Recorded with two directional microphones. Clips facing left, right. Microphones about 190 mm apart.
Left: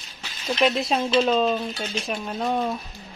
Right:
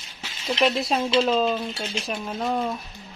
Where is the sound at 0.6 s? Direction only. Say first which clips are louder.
Left 1 dB; centre (ahead or behind).